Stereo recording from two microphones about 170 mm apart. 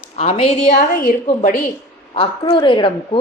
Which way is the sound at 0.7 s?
50° left (ahead or behind).